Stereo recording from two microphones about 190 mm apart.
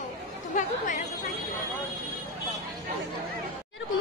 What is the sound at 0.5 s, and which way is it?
Speech, 40° left (ahead or behind).